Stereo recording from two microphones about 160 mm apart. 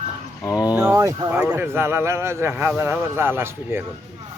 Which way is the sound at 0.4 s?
25° left (ahead or behind).